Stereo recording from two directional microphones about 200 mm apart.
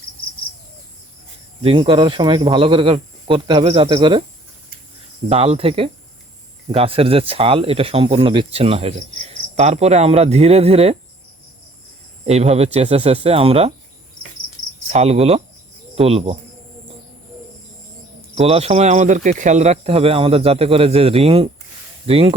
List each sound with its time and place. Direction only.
1.6 s speech: 25° right (ahead or behind)
5.3 s speech: 30° right (ahead or behind)
12.2 s speech: 30° right (ahead or behind)
14.8 s speech: 35° right (ahead or behind)
18.3 s speech: 30° right (ahead or behind)